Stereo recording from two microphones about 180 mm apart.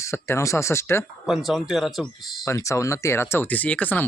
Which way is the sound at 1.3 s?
Centre (ahead or behind).